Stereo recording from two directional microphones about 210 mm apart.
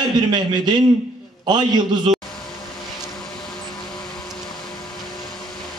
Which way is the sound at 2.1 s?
35° right (ahead or behind).